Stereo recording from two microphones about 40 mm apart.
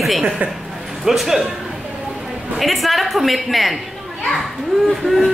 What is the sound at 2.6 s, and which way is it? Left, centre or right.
Speech, centre.